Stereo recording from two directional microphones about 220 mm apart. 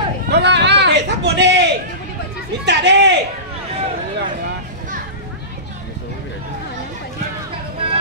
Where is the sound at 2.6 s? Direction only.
50° right (ahead or behind).